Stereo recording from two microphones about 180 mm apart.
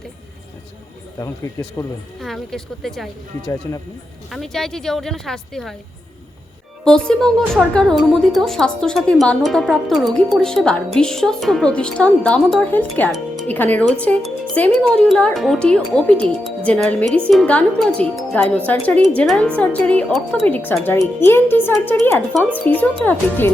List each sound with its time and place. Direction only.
1.8 s speech: 20° left (ahead or behind)
2.2 s a woman's voice: centre (ahead or behind)
4.3 s a woman's voice: centre (ahead or behind)
6.8 s a woman's voice: 5° left (ahead or behind)